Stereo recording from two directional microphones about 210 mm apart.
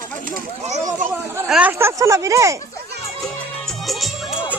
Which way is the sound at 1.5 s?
10° right (ahead or behind).